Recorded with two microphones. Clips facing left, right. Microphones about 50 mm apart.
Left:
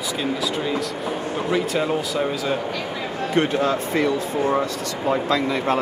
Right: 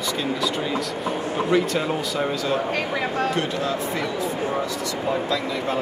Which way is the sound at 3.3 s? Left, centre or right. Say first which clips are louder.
Left 4 dB; left.